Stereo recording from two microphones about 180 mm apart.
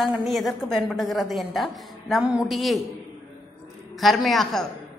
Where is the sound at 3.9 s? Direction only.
Centre (ahead or behind).